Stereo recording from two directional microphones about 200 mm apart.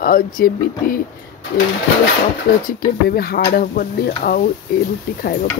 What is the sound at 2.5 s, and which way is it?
Speech, 40° left (ahead or behind).